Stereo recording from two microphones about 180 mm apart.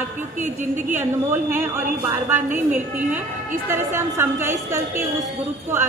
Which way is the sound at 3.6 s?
15° right (ahead or behind).